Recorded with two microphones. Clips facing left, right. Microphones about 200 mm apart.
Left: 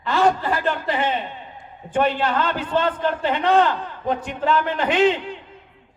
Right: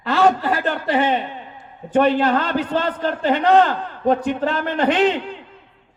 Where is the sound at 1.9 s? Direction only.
40° right (ahead or behind).